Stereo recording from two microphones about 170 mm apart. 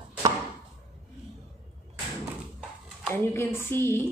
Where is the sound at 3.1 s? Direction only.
15° left (ahead or behind).